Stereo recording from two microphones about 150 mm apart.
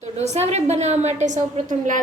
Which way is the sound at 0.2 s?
45° right (ahead or behind).